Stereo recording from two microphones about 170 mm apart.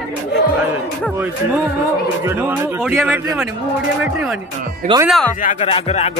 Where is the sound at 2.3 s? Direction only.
10° right (ahead or behind).